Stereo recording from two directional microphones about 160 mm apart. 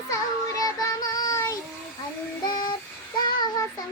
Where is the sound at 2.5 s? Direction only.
25° left (ahead or behind).